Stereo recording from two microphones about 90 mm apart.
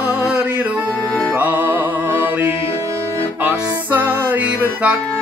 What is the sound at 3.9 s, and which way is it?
Music, 20° right (ahead or behind).